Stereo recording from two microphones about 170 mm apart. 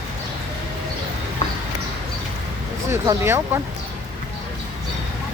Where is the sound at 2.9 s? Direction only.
15° right (ahead or behind).